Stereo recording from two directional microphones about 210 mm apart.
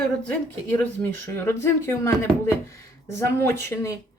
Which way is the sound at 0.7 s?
10° left (ahead or behind).